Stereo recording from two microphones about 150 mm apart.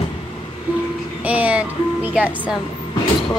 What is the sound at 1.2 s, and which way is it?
Speech, 10° right (ahead or behind).